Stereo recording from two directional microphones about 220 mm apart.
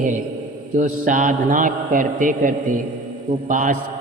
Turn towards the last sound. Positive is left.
turn(degrees=-35)  # may be behind; listen again after turning